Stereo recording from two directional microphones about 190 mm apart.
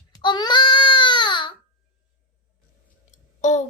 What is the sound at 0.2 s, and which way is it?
Child singing, 25° left (ahead or behind).